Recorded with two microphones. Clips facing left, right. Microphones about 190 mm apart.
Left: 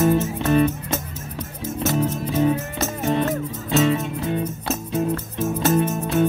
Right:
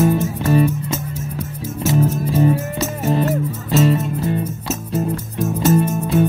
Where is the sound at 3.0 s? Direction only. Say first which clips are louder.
Right 3 dB; 5° right (ahead or behind).